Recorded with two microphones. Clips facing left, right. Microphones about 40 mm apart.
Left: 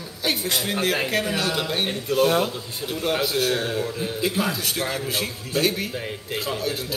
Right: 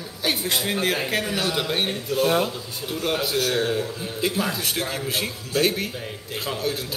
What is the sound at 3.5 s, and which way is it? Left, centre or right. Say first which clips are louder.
A man's voice: right 1 dB; centre.